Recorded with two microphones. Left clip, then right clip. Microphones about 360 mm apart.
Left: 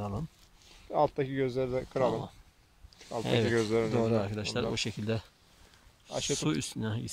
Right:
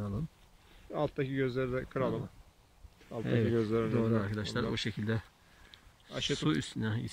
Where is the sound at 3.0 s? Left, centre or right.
Left.